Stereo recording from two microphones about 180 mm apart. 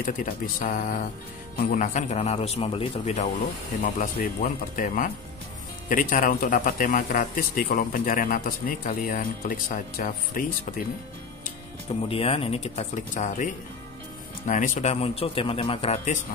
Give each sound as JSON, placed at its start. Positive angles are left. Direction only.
{"t": 0.0, "sound": "a man's voice", "side_deg": 50}
{"t": 3.8, "sound": "a man's voice", "side_deg": 50}
{"t": 12.1, "sound": "speech", "side_deg": 30}